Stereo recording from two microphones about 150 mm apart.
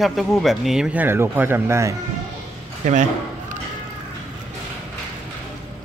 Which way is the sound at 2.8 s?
55° right (ahead or behind).